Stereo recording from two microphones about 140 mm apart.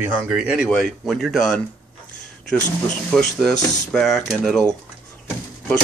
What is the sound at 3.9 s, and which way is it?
Speech, centre (ahead or behind).